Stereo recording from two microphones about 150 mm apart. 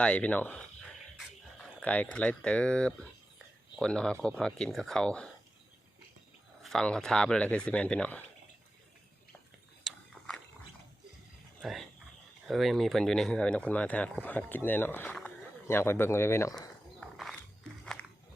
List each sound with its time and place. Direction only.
0.0 s speech: 10° left (ahead or behind)
1.8 s speech: 10° left (ahead or behind)
6.6 s speech: centre (ahead or behind)
9.8 s a sound: 5° left (ahead or behind)
11.6 s speech: centre (ahead or behind); by 16.6 s 20° left (ahead or behind)
17.0 s a sound: centre (ahead or behind)